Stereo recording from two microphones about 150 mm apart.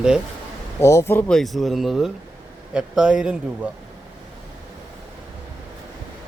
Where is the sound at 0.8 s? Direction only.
20° left (ahead or behind).